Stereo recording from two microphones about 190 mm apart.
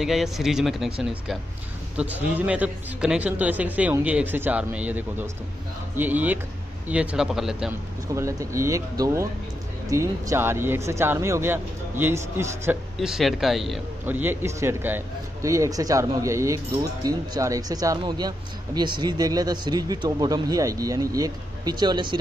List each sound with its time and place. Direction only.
0.0 s a man's voice: centre (ahead or behind)
8.1 s a man's voice: 15° right (ahead or behind)
13.0 s a man's voice: centre (ahead or behind); by 22.1 s 25° right (ahead or behind)